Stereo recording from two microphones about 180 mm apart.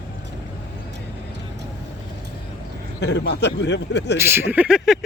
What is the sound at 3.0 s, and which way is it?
A man's voice, 75° left (ahead or behind).